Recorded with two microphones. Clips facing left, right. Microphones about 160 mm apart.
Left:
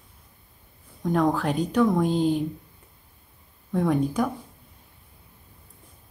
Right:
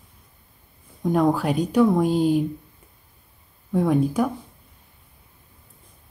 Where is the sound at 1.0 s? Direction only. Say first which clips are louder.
Right 3 dB; 10° right (ahead or behind).